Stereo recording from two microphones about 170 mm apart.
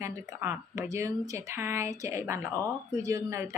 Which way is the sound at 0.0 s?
15° right (ahead or behind).